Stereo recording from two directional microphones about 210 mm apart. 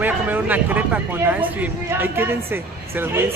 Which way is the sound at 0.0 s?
10° right (ahead or behind).